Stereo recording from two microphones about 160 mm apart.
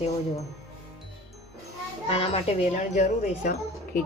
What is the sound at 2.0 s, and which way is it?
A woman's voice, 40° left (ahead or behind).